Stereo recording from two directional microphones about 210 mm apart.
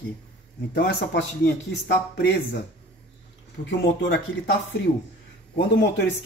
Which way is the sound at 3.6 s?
55° left (ahead or behind).